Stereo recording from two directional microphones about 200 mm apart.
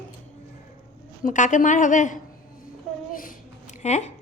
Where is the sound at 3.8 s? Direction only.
35° left (ahead or behind).